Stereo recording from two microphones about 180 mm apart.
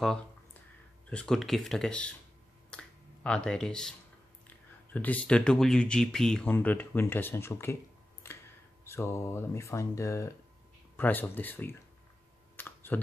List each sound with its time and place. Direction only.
1.1 s speech: 5° left (ahead or behind)
2.7 s a sound: 5° left (ahead or behind)
4.9 s speech: 10° left (ahead or behind)
8.2 s a sound: 15° left (ahead or behind)
8.8 s speech: 15° left (ahead or behind)
12.5 s clicking: 10° left (ahead or behind)